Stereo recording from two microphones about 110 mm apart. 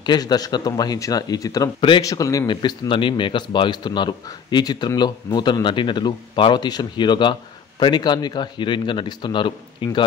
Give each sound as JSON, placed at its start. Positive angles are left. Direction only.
{"t": 0.0, "sound": "speech", "side_deg": 40}
{"t": 2.5, "sound": "speech", "side_deg": 45}